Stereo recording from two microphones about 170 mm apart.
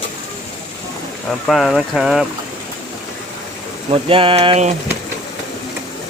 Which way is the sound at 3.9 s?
30° right (ahead or behind).